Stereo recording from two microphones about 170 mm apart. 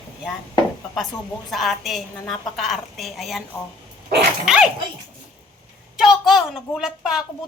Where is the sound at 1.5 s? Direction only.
Centre (ahead or behind).